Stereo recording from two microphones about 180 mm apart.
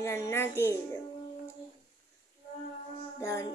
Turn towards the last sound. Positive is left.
turn(degrees=15)  # may be behind; listen again after turning